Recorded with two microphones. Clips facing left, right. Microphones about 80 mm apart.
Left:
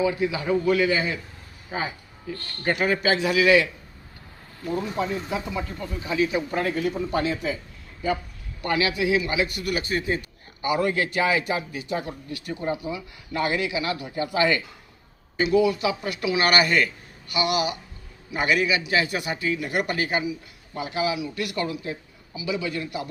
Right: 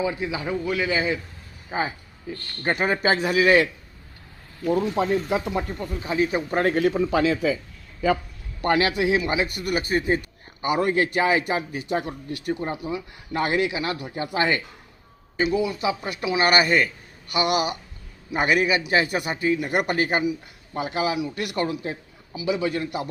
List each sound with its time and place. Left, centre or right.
0.0 s a man's voice: right
1.7 s speech: right
4.9 s speech: right
5.8 s speech: right
6.7 s speech: right
8.6 s speech: right
11.7 s speech: right
15.7 s speech: right
17.3 s speech: right